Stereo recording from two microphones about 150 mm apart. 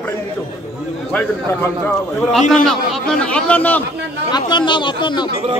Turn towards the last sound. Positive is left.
turn(degrees=30)  # may be behind; listen again after turning